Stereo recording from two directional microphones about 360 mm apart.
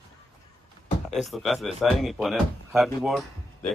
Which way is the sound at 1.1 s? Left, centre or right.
Centre.